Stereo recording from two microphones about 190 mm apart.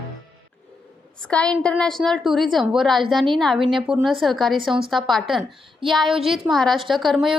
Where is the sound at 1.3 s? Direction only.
5° left (ahead or behind).